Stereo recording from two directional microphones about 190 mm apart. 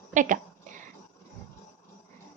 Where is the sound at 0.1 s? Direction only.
40° right (ahead or behind).